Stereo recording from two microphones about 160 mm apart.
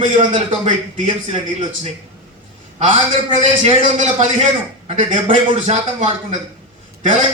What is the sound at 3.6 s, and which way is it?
A man's voice, 35° right (ahead or behind).